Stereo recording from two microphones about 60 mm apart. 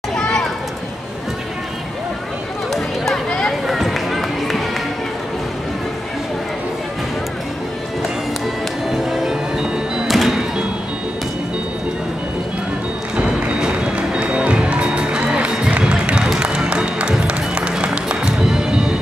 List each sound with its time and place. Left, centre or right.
3.3 s a sound: centre
3.6 s run: centre
8.9 s music: centre
13.1 s music: centre